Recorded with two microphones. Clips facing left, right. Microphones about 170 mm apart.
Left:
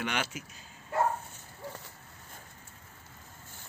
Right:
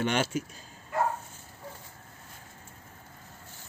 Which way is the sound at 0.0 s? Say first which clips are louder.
Right 6 dB; 30° right (ahead or behind).